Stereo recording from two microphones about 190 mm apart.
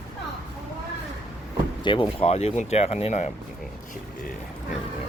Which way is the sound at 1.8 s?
25° left (ahead or behind).